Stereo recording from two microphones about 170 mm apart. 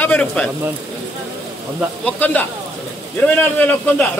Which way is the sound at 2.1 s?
10° left (ahead or behind).